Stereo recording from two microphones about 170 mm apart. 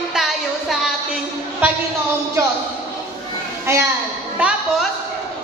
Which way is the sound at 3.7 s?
15° right (ahead or behind).